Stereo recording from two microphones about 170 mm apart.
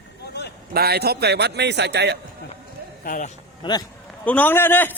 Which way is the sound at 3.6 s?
25° left (ahead or behind).